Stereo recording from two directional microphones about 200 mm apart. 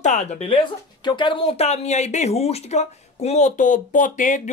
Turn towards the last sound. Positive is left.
turn(degrees=40)  # may be behind; listen again after turning